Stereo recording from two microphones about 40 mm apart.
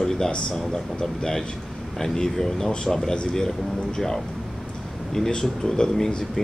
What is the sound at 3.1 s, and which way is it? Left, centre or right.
Speech, left.